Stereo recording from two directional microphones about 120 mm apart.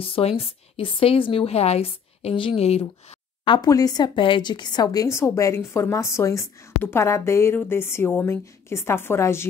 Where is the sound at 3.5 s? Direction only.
30° left (ahead or behind).